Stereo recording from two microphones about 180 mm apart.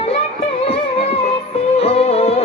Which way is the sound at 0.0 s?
35° left (ahead or behind).